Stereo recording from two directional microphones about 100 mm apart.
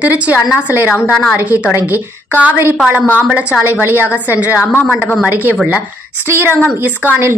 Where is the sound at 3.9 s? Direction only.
20° left (ahead or behind).